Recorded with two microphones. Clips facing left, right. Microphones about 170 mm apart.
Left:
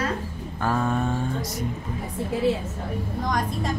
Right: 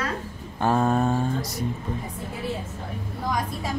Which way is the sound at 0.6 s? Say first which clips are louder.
Right 3 dB; 25° right (ahead or behind).